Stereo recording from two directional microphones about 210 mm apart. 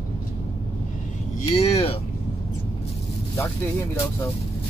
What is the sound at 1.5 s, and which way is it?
Speech, 30° left (ahead or behind).